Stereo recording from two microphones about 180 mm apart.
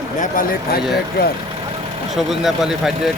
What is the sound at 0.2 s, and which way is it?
Speech, 50° left (ahead or behind).